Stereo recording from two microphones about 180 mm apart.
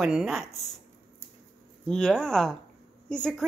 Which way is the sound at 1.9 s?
5° left (ahead or behind).